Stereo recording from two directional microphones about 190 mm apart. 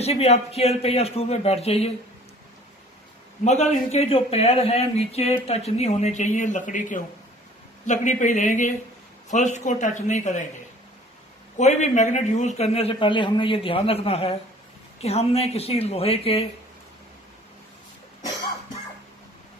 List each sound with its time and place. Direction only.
0.0 s speech: 35° left (ahead or behind)
3.4 s speech: 35° left (ahead or behind)
11.5 s speech: 35° left (ahead or behind)